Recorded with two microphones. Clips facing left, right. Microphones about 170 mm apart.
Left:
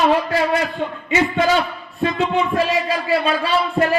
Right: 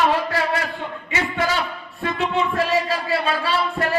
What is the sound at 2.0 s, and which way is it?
Speech, 20° left (ahead or behind).